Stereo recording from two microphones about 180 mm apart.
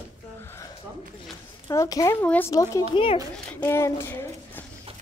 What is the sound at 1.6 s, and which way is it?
A woman's voice, 20° left (ahead or behind).